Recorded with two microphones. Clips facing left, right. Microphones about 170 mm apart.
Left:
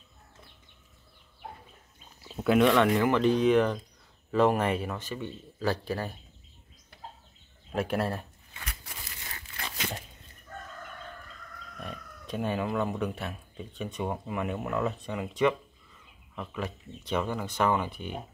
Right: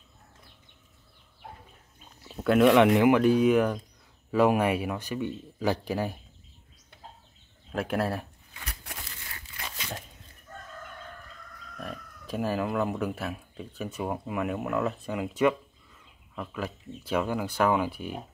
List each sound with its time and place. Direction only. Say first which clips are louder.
2.4 s speech: right 2 dB; centre (ahead or behind)
2.7 s speech: right 4 dB; 20° right (ahead or behind)
7.7 s speech: right 1 dB; centre (ahead or behind)
11.8 s speech: right 2 dB; centre (ahead or behind)